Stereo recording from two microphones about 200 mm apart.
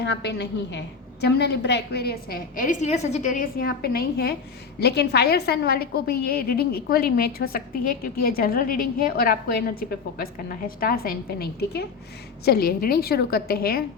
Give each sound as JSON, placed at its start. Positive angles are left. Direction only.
{"t": 0.0, "sound": "a woman's voice", "side_deg": 55}
{"t": 10.8, "sound": "a woman's voice", "side_deg": 45}